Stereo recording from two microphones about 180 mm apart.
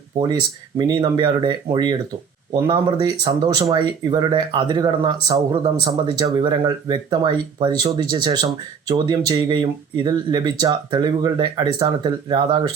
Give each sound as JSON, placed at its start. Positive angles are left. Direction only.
{"t": 0.2, "sound": "speech", "side_deg": -20}